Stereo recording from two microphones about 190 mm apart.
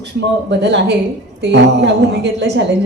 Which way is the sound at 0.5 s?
65° right (ahead or behind).